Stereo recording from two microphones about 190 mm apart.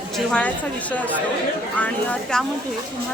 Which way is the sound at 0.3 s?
5° left (ahead or behind).